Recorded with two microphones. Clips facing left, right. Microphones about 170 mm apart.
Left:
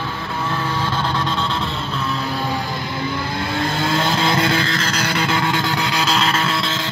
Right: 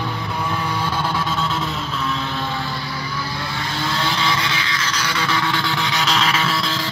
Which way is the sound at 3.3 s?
50° left (ahead or behind).